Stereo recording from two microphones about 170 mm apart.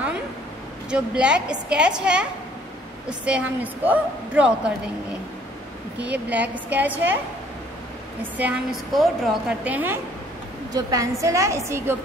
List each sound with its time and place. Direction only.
0.8 s a woman's voice: 5° right (ahead or behind)
5.9 s a woman's voice: 10° right (ahead or behind)
8.2 s a woman's voice: 10° right (ahead or behind)
10.7 s a woman's voice: 20° right (ahead or behind)